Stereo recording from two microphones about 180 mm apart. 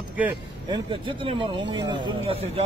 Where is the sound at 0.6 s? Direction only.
25° right (ahead or behind).